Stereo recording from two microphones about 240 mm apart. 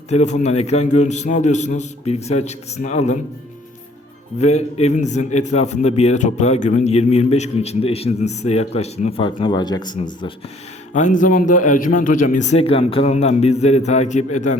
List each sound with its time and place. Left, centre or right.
0.1 s a man's voice: left
4.4 s a man's voice: left
10.9 s a man's voice: left